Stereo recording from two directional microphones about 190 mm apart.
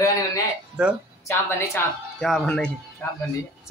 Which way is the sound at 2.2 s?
5° left (ahead or behind).